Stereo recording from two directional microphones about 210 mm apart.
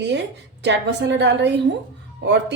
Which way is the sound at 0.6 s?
55° right (ahead or behind).